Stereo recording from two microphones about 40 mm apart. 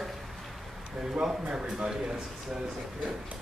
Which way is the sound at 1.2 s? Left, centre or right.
Centre.